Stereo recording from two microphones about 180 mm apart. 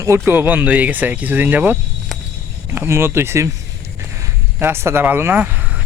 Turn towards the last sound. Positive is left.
turn(degrees=-10)  # may be behind; listen again after turning